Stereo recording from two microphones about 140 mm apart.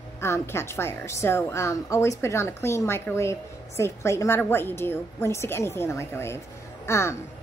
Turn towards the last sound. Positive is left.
turn(degrees=20)  # may be behind; listen again after turning